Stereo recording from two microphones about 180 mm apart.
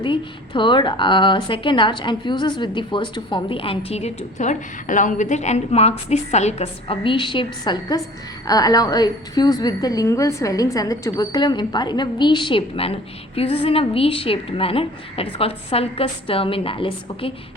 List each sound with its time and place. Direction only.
0.0 s a woman's voice: 25° left (ahead or behind)